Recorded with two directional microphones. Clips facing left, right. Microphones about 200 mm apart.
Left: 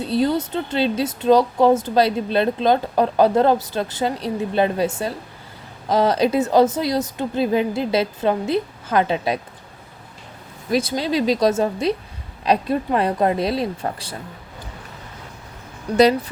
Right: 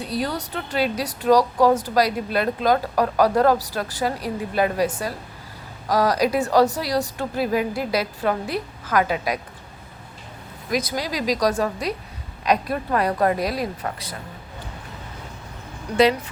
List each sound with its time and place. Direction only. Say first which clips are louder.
0.0 s speech: left 7 dB; 25° left (ahead or behind)
10.7 s speech: left 5 dB; 30° left (ahead or behind)